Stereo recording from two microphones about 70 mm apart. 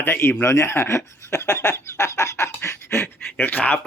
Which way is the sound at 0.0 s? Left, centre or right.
Left.